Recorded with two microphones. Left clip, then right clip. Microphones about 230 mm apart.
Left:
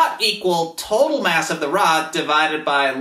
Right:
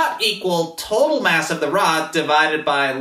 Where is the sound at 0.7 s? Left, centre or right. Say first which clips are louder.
Even; left.